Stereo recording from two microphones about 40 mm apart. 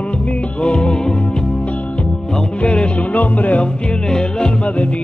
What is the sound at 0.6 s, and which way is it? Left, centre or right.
Music, left.